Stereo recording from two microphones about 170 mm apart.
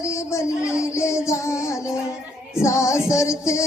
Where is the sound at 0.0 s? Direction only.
15° left (ahead or behind).